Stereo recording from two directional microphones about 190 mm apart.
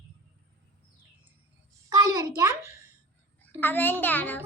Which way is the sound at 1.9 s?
20° right (ahead or behind).